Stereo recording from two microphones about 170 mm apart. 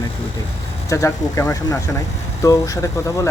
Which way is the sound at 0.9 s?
20° left (ahead or behind).